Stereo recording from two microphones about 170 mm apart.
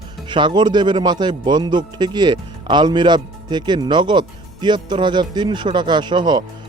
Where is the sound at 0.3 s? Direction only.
25° right (ahead or behind).